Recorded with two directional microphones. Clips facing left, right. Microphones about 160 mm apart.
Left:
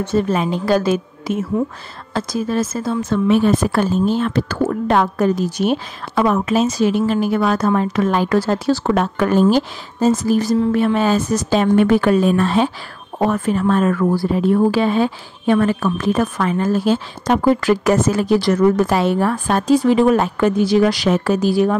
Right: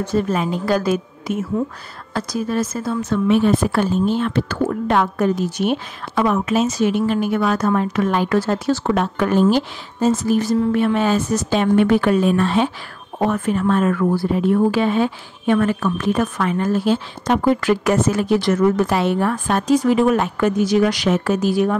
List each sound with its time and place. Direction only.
0.0 s a woman's voice: 25° left (ahead or behind)